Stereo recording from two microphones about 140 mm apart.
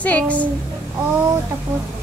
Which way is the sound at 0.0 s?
10° left (ahead or behind).